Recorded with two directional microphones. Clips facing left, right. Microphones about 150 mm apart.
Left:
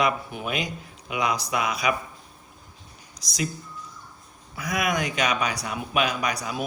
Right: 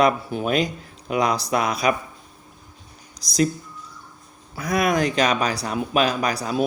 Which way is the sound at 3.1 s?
35° right (ahead or behind).